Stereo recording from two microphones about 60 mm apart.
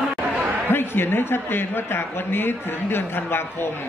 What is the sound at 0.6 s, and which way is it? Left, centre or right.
A woman's voice, left.